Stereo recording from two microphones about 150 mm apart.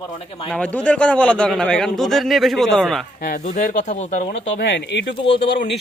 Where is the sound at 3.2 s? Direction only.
65° left (ahead or behind).